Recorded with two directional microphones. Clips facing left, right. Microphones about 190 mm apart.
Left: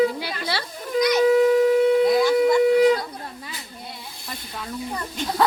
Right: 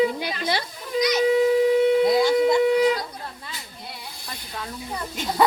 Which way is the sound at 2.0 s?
25° right (ahead or behind).